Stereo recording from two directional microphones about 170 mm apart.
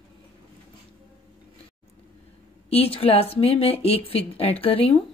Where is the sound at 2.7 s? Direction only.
35° left (ahead or behind).